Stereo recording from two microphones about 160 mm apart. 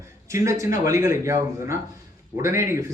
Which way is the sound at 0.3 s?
20° right (ahead or behind).